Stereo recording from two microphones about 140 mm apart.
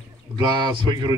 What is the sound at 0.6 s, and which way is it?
Speech, 30° right (ahead or behind).